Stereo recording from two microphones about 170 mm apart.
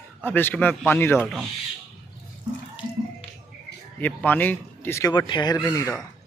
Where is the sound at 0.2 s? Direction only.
10° left (ahead or behind).